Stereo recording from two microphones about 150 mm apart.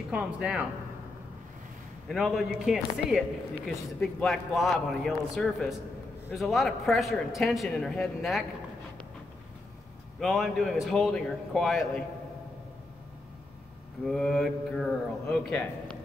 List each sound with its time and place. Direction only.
0.1 s speech: 5° right (ahead or behind)
2.0 s speech: centre (ahead or behind)
10.2 s speech: centre (ahead or behind)
14.0 s speech: 5° left (ahead or behind)